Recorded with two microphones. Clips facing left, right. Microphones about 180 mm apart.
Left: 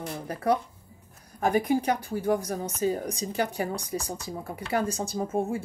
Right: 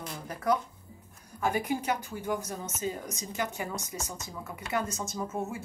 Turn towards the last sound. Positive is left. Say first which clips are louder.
# left 6 dB
turn(degrees=30)  # may be behind; listen again after turning